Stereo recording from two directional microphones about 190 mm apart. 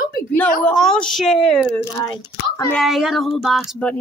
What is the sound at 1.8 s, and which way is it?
Speech, 15° left (ahead or behind).